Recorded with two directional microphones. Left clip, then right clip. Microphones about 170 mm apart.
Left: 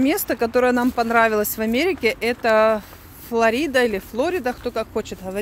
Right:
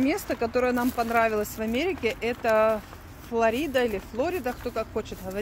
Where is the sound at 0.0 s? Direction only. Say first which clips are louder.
Left 6 dB; 55° left (ahead or behind).